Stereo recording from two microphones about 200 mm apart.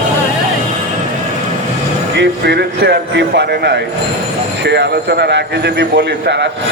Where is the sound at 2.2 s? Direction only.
55° right (ahead or behind).